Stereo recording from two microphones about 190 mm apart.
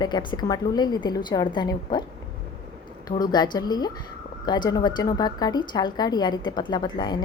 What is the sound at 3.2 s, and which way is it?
A woman's voice, 20° left (ahead or behind).